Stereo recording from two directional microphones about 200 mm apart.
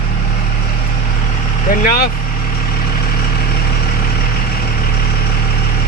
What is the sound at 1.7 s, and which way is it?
Speech, 45° left (ahead or behind).